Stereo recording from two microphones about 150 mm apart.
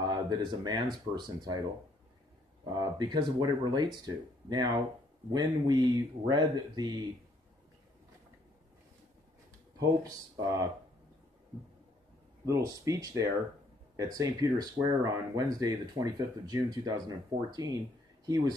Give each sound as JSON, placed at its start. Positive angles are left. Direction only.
{"t": 0.0, "sound": "speech", "side_deg": -30}
{"t": 2.6, "sound": "speech", "side_deg": -25}
{"t": 9.8, "sound": "speech", "side_deg": -25}
{"t": 12.4, "sound": "speech", "side_deg": -20}